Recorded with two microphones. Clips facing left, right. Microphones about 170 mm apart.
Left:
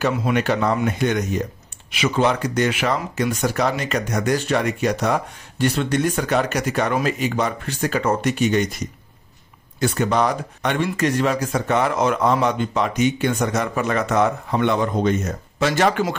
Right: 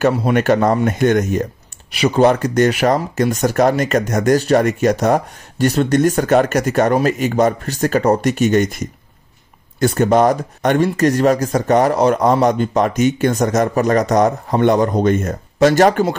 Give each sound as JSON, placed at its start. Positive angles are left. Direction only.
{"t": 0.1, "sound": "speech", "side_deg": -40}